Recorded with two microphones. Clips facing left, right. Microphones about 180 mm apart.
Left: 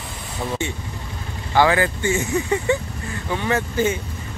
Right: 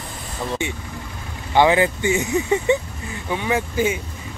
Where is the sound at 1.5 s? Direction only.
20° right (ahead or behind).